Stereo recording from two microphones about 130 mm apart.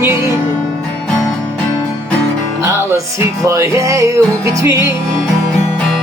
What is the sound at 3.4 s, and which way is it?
Music, 25° right (ahead or behind).